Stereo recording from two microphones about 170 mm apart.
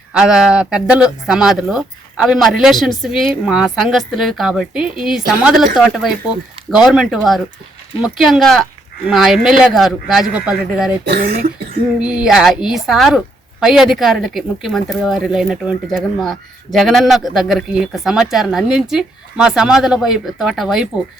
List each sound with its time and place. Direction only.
0.1 s a woman's voice: 5° right (ahead or behind)
11.1 s speech: 65° right (ahead or behind)
11.9 s a woman's voice: 5° right (ahead or behind)